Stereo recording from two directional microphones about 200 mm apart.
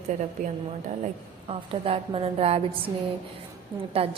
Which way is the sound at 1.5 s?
30° right (ahead or behind).